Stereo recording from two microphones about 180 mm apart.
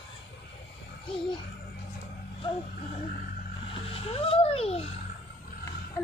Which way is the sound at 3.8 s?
30° left (ahead or behind).